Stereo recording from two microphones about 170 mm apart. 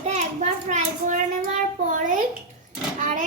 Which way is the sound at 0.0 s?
40° right (ahead or behind).